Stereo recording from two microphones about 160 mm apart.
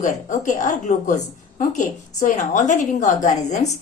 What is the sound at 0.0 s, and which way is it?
A woman's voice, 50° left (ahead or behind).